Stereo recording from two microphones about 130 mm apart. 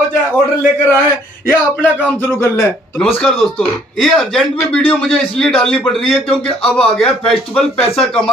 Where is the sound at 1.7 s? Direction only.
15° left (ahead or behind).